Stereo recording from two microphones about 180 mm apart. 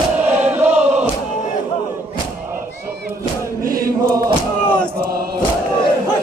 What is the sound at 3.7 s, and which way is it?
Choir, 55° right (ahead or behind).